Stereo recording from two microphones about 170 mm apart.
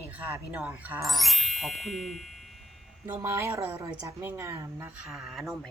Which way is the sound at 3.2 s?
15° right (ahead or behind).